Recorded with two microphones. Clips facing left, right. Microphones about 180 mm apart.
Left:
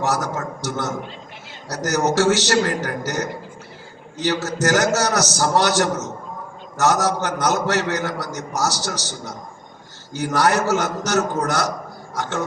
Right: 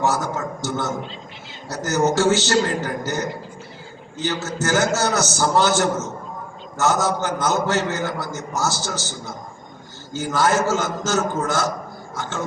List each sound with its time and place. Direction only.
0.0 s a man's voice: 70° left (ahead or behind)